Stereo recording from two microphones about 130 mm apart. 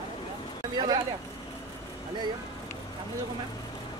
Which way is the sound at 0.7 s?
35° right (ahead or behind).